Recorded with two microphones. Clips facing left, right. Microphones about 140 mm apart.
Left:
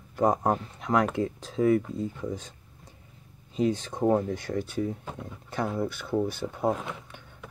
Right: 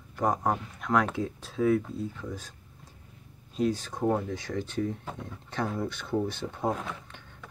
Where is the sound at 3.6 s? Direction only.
20° left (ahead or behind).